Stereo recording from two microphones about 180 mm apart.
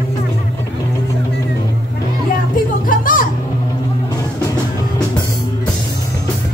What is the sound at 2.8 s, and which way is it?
Music, 50° left (ahead or behind).